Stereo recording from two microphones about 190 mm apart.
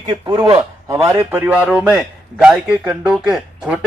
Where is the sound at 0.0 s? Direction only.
20° right (ahead or behind).